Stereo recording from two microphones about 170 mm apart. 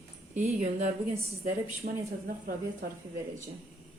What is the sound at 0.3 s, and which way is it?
Speech, 45° right (ahead or behind).